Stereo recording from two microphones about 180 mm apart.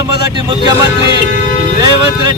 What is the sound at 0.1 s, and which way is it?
Speech, 25° right (ahead or behind).